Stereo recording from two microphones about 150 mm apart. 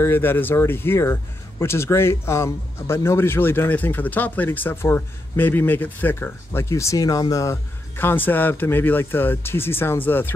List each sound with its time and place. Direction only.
0.0 s speech: 15° left (ahead or behind)
8.0 s speech: 15° left (ahead or behind)